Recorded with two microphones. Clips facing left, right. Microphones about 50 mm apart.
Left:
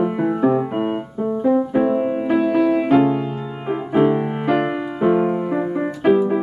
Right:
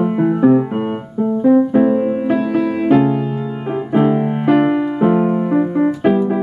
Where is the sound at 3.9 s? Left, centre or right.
Centre.